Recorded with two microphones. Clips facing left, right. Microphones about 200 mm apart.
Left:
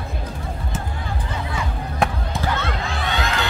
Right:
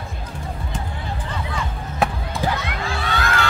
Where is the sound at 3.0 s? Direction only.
20° left (ahead or behind).